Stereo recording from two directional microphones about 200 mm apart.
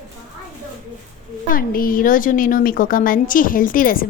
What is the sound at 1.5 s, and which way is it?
A woman's voice, 45° left (ahead or behind).